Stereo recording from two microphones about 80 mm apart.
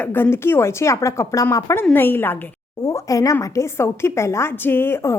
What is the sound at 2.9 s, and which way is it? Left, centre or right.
A woman's voice, left.